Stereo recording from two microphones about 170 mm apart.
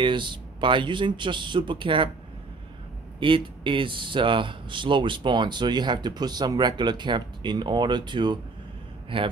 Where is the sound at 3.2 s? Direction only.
30° right (ahead or behind).